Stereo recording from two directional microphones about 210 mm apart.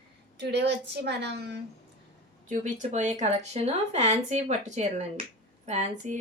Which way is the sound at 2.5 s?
35° right (ahead or behind).